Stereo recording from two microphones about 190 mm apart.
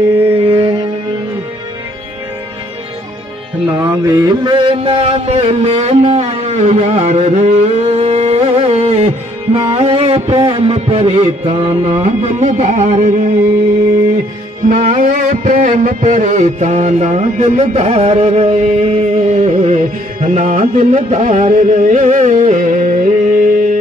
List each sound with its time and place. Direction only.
3.7 s mantra: 20° right (ahead or behind)
10.5 s music: 35° right (ahead or behind)
14.7 s music: 45° right (ahead or behind)